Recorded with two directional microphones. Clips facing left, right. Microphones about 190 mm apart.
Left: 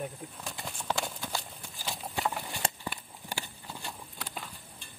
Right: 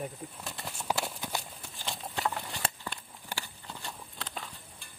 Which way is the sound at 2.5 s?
15° left (ahead or behind).